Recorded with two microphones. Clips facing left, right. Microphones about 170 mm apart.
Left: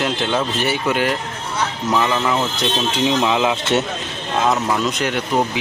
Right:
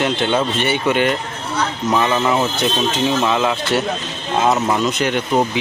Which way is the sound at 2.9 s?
10° left (ahead or behind).